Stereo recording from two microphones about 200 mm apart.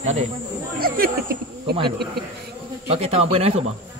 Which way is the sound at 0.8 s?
45° right (ahead or behind).